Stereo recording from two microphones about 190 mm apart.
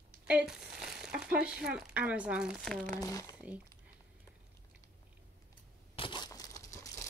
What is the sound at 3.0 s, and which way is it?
Speech, 15° left (ahead or behind).